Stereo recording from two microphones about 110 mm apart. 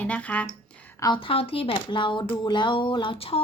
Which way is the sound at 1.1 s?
55° left (ahead or behind).